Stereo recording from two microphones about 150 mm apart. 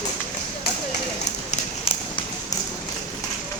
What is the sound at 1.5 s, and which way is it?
Run, 40° left (ahead or behind).